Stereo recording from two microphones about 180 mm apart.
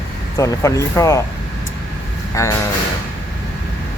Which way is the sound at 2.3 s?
15° left (ahead or behind).